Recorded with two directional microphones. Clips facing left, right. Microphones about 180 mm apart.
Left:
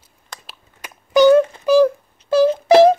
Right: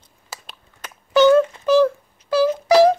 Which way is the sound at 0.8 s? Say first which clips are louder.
Left 2 dB; 15° left (ahead or behind).